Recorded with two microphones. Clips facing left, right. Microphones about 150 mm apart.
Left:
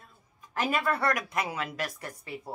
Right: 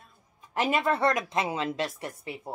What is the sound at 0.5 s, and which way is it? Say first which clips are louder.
A woman's voice: right 3 dB; 25° right (ahead or behind).